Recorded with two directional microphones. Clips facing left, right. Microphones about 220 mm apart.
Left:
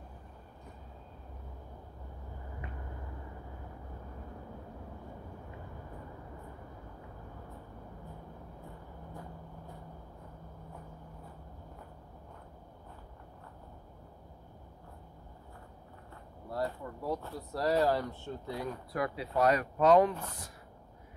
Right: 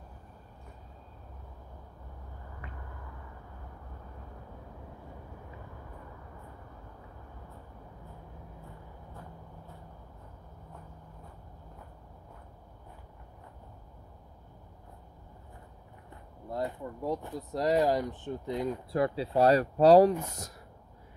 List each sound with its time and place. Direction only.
16.4 s speech: 20° right (ahead or behind); by 20.5 s 40° right (ahead or behind)